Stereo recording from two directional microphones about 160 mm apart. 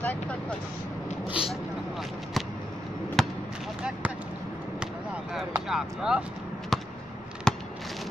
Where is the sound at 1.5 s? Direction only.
Centre (ahead or behind).